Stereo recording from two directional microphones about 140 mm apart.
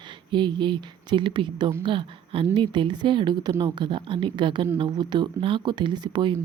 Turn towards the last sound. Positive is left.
turn(degrees=-35)  # may be behind; listen again after turning